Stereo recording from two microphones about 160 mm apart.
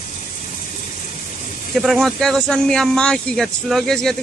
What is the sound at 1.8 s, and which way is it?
Speech, centre (ahead or behind).